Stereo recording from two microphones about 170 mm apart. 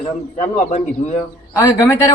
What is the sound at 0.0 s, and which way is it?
Speech, 45° left (ahead or behind).